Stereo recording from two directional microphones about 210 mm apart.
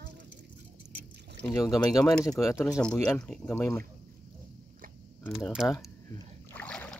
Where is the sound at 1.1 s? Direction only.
50° right (ahead or behind).